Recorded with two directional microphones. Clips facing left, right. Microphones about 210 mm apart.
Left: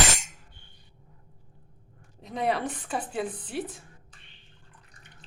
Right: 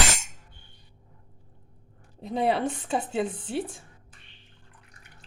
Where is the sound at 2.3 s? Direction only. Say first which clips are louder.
Right 3 dB; 30° right (ahead or behind).